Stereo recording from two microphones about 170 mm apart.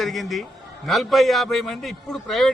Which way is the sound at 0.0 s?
Centre (ahead or behind).